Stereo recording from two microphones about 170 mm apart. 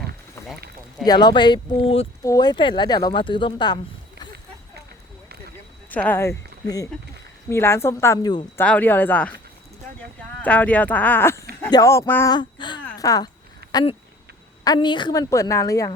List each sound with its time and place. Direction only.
1.0 s a woman's voice: 25° left (ahead or behind)
2.2 s a woman's voice: 20° left (ahead or behind)
5.9 s speech: 10° left (ahead or behind)
8.5 s speech: 10° left (ahead or behind)
10.4 s speech: 10° left (ahead or behind)
12.3 s a sound: 25° left (ahead or behind)
14.6 s a woman's voice: 25° left (ahead or behind)